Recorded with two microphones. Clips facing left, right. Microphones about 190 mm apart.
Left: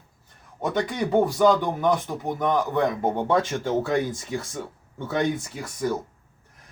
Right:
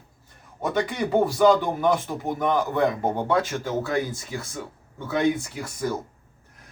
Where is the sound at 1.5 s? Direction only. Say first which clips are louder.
Right 1 dB; 5° right (ahead or behind).